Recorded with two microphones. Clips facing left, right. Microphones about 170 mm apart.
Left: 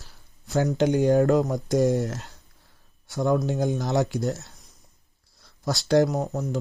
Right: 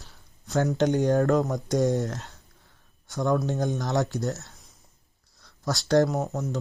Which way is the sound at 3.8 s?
15° left (ahead or behind).